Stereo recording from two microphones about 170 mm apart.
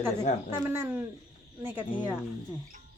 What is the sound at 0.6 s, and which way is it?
Speech, 15° right (ahead or behind).